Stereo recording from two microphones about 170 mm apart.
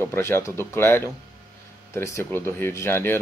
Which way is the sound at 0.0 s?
15° left (ahead or behind).